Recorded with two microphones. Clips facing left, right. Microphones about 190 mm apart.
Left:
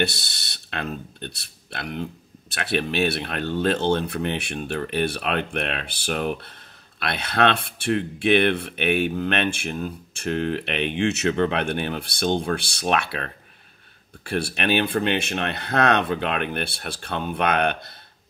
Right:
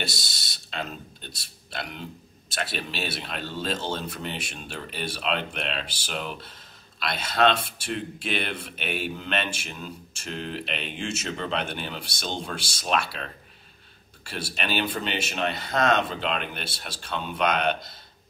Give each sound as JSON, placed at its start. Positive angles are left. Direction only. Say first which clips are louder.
{"t": 0.0, "sound": "speech", "louder": "left 9 dB", "side_deg": 60}